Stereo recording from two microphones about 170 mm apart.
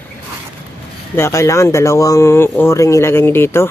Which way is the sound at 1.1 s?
15° left (ahead or behind).